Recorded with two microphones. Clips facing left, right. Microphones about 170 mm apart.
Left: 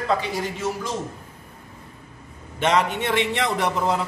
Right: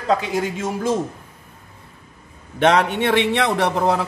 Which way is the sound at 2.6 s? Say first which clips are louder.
Right 4 dB; 65° right (ahead or behind).